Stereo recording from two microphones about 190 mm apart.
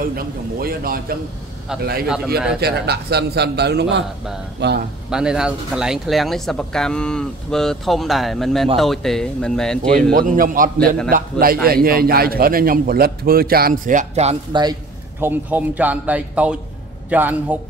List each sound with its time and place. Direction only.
0.0 s a man's voice: 50° right (ahead or behind)
5.1 s speech: 5° right (ahead or behind)
10.1 s a man's voice: 45° right (ahead or behind)
14.6 s a man's voice: 15° right (ahead or behind)